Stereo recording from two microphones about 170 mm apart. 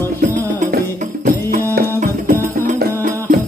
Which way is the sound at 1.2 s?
60° right (ahead or behind).